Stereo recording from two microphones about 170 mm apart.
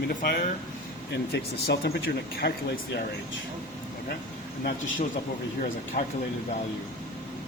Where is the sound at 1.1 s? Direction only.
80° left.